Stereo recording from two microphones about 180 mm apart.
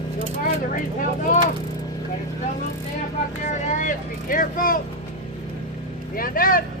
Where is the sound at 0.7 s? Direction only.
45° left (ahead or behind).